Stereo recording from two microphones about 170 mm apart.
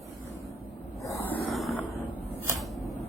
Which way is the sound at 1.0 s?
15° left (ahead or behind).